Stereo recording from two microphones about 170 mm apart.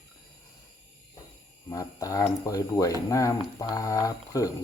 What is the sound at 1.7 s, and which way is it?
Speech, 20° left (ahead or behind).